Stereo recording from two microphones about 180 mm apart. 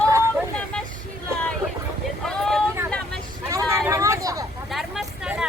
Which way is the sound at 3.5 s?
15° right (ahead or behind).